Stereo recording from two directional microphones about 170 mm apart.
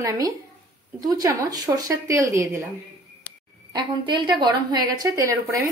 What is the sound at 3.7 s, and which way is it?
A woman's voice, 25° right (ahead or behind).